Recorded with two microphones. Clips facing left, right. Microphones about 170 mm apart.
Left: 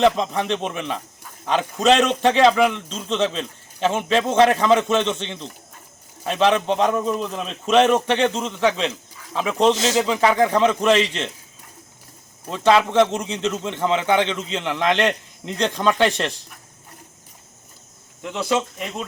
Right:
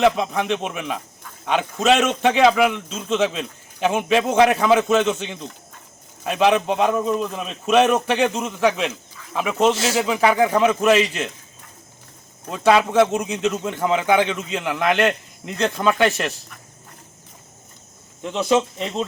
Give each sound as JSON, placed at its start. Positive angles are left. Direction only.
{"t": 0.0, "sound": "a man's voice", "side_deg": -5}
{"t": 12.5, "sound": "a man's voice", "side_deg": -10}
{"t": 18.2, "sound": "speech", "side_deg": -20}